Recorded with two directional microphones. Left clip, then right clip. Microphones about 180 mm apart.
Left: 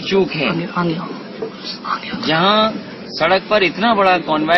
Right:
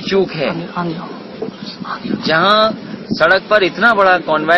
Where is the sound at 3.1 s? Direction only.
10° right (ahead or behind).